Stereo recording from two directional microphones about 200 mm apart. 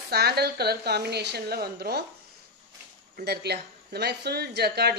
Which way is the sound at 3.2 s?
55° right (ahead or behind).